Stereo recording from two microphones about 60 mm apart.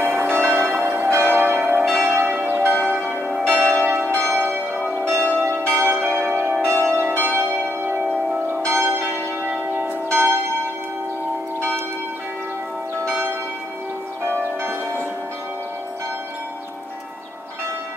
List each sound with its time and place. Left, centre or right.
0.0 s change ringing: right
0.7 s change ringing: right
2.0 s church bell: right
3.4 s change ringing: right
8.6 s church bell: right
13.0 s church bell: right
14.6 s church bell: right